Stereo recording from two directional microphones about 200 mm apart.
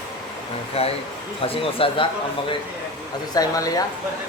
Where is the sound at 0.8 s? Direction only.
30° left (ahead or behind).